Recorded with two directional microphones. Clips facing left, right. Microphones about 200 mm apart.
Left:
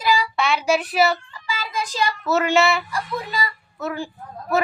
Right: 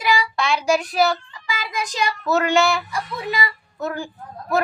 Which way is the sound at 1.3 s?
15° right (ahead or behind).